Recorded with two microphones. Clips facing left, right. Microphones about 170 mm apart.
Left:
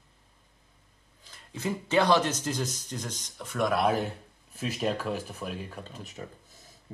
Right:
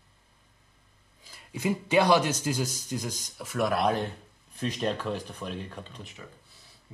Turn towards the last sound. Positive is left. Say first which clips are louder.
# left 3 dB
turn(degrees=45)  # may be behind; listen again after turning